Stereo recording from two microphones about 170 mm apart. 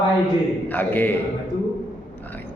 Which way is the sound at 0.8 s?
10° left (ahead or behind).